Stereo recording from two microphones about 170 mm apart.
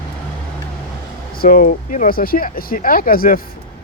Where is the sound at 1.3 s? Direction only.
55° left (ahead or behind).